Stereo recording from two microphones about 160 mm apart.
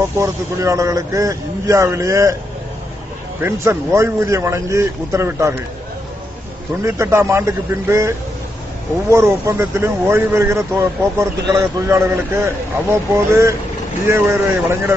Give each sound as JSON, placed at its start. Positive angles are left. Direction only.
{"t": 0.2, "sound": "a man's voice", "side_deg": -20}
{"t": 3.3, "sound": "speech", "side_deg": -15}
{"t": 6.8, "sound": "speech", "side_deg": -15}
{"t": 9.1, "sound": "speech", "side_deg": -15}